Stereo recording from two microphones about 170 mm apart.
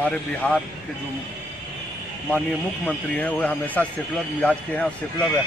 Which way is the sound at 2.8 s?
10° left (ahead or behind).